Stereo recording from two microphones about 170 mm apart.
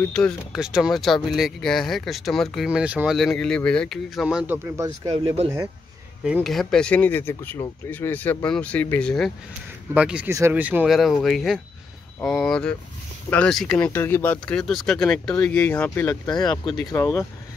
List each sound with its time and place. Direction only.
0.0 s speech: 5° left (ahead or behind)
4.7 s speech: 20° right (ahead or behind)
5.1 s speech: 35° right (ahead or behind)
6.2 s speech: centre (ahead or behind)
9.9 s speech: 5° right (ahead or behind); by 16.2 s 10° left (ahead or behind)
16.3 s speech: 25° left (ahead or behind)